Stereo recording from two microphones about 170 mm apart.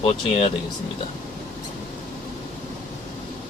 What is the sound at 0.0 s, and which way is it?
Speech, 35° left (ahead or behind).